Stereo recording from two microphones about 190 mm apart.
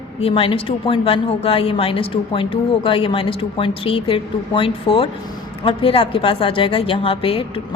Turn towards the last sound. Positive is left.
turn(degrees=30)  # may be behind; listen again after turning